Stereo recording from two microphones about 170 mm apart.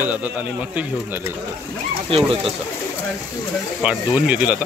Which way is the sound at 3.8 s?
5° right (ahead or behind).